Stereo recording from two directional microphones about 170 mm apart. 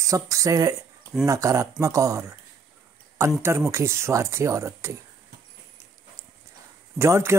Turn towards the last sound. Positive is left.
turn(degrees=-15)  # may be behind; listen again after turning